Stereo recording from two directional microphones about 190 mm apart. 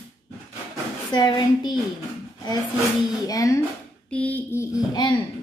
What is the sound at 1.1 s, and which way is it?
Speech, 20° left (ahead or behind).